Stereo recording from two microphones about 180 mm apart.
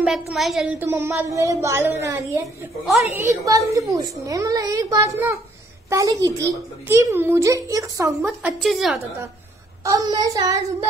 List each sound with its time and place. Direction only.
0.3 s a woman's voice: centre (ahead or behind)
2.4 s a woman's voice: centre (ahead or behind)
3.1 s a woman's voice: 15° right (ahead or behind)
8.3 s a woman's voice: 5° right (ahead or behind)
9.8 s a child's voice: 20° right (ahead or behind)